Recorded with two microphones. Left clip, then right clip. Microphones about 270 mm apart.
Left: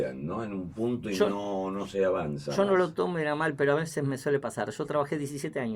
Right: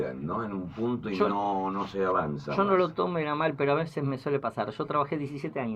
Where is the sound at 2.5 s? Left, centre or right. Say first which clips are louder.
Even; left.